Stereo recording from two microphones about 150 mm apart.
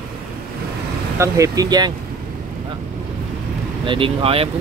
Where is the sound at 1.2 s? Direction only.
20° right (ahead or behind).